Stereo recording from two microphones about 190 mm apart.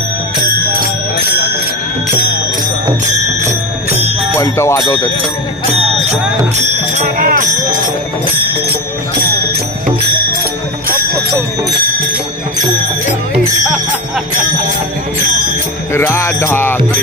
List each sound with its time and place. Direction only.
4.4 s music: 15° left (ahead or behind)
6.9 s speech: 45° right (ahead or behind)
15.9 s music: 15° left (ahead or behind)